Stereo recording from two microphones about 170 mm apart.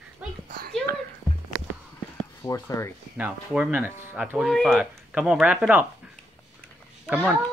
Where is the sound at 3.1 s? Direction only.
10° right (ahead or behind).